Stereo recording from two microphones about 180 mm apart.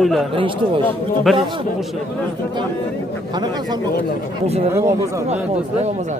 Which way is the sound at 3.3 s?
25° right (ahead or behind).